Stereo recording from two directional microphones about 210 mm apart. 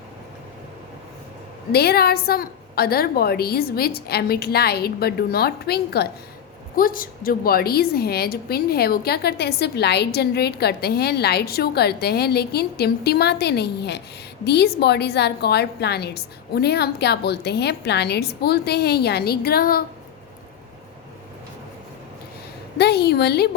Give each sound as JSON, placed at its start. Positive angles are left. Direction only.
{"t": 1.7, "sound": "a woman's voice", "side_deg": 50}
{"t": 22.8, "sound": "a woman's voice", "side_deg": 50}